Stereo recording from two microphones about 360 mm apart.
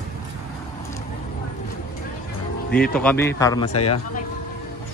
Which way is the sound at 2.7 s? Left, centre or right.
Centre.